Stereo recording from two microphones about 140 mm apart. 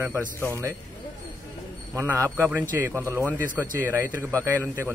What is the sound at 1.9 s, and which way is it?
A man's voice, 20° right (ahead or behind).